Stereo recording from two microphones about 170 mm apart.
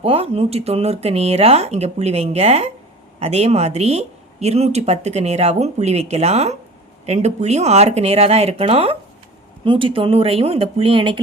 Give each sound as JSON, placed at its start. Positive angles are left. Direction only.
{"t": 0.0, "sound": "speech", "side_deg": -35}